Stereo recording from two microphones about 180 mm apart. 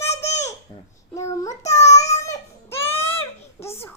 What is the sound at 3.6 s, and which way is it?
Speech, 15° left (ahead or behind).